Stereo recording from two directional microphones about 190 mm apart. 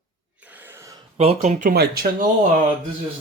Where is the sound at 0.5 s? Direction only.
10° right (ahead or behind).